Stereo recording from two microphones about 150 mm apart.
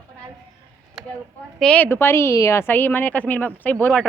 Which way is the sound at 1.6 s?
10° left (ahead or behind).